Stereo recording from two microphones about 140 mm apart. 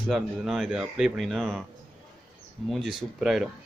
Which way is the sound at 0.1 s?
Centre (ahead or behind).